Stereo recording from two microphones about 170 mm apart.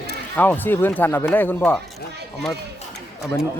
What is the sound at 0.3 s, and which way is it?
Speech, 10° left (ahead or behind).